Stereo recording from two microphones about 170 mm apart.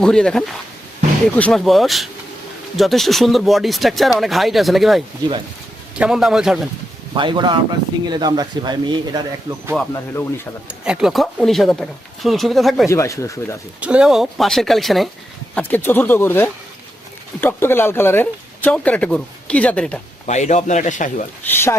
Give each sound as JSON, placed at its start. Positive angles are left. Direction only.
{"t": 0.0, "sound": "speech", "side_deg": 5}
{"t": 7.1, "sound": "speech", "side_deg": -25}
{"t": 9.9, "sound": "speech", "side_deg": 15}
{"t": 10.7, "sound": "speech", "side_deg": -5}
{"t": 12.9, "sound": "speech", "side_deg": 20}
{"t": 13.8, "sound": "speech", "side_deg": -5}
{"t": 15.5, "sound": "speech", "side_deg": 10}
{"t": 20.2, "sound": "a man's voice", "side_deg": 45}
{"t": 21.4, "sound": "speech", "side_deg": 15}